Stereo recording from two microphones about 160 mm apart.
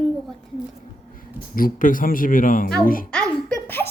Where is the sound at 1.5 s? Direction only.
60° left (ahead or behind).